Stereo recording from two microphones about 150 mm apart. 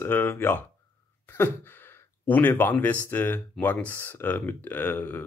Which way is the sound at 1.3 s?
15° left (ahead or behind).